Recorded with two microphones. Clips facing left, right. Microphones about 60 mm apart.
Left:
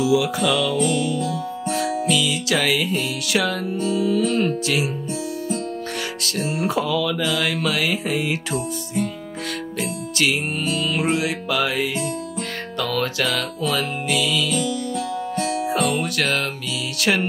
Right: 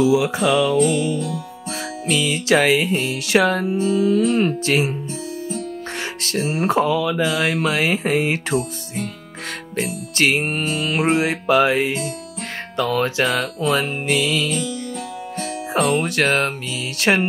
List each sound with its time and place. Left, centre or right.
0.0 s speech: right
2.0 s music: right
3.6 s speech: right
4.6 s music: right
6.5 s speech: right
9.8 s music: right
12.7 s speech: right
13.7 s music: right